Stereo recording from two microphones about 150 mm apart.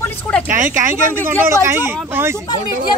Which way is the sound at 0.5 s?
60° right (ahead or behind).